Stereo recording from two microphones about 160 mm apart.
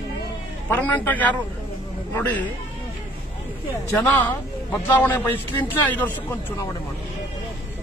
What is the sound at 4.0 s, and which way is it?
A man's voice, 10° left (ahead or behind).